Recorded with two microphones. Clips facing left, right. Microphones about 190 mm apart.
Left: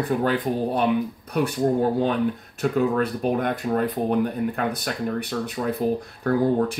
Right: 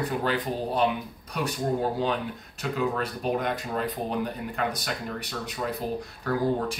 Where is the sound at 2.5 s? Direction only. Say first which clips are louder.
Left 6 dB; 55° left (ahead or behind).